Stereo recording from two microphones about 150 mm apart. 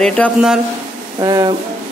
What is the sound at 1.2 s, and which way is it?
Speech, 25° right (ahead or behind).